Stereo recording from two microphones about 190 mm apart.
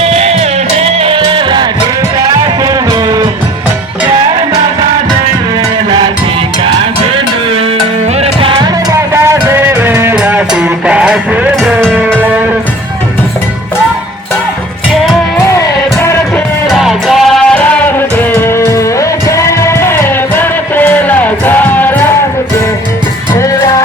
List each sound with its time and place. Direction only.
0.0 s music: 35° right (ahead or behind)
8.2 s music: 30° right (ahead or behind); by 11.9 s centre (ahead or behind)
15.5 s music: 15° left (ahead or behind)
16.6 s music: centre (ahead or behind)